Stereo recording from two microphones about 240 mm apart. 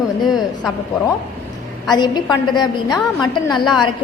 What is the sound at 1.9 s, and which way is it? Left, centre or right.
Speech, centre.